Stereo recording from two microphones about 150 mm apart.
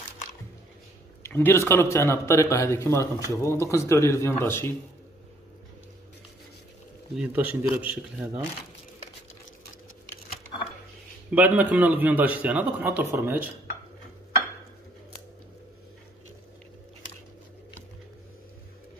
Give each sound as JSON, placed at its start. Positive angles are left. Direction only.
{"t": 1.2, "sound": "speech", "side_deg": 15}
{"t": 7.2, "sound": "a man's voice", "side_deg": -10}
{"t": 11.3, "sound": "a man's voice", "side_deg": -10}